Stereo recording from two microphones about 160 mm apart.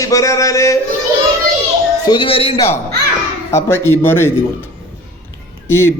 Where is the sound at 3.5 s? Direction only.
15° left (ahead or behind).